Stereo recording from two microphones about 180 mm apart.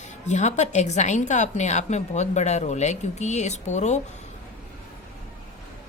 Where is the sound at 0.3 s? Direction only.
40° left (ahead or behind).